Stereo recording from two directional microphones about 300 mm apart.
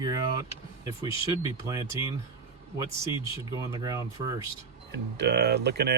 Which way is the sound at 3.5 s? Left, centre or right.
Centre.